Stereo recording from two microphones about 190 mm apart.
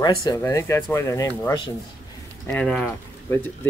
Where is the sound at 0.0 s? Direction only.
20° left (ahead or behind).